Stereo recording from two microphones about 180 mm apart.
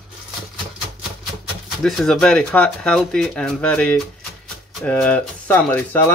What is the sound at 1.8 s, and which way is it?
Speech, centre (ahead or behind).